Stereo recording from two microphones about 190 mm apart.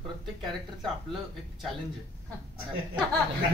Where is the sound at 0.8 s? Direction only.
Centre (ahead or behind).